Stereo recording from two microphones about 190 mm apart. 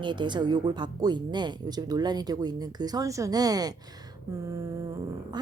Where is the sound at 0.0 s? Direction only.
25° right (ahead or behind).